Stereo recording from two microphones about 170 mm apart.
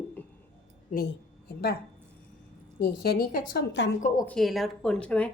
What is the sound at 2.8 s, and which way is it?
A woman's voice, 70° left (ahead or behind).